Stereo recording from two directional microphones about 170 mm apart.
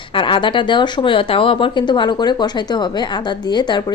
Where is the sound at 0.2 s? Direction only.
30° left (ahead or behind).